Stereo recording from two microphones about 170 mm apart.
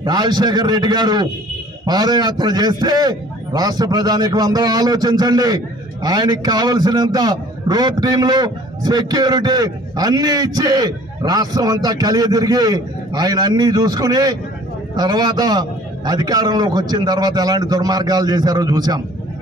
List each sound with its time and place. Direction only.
0.0 s a man's voice: 25° right (ahead or behind)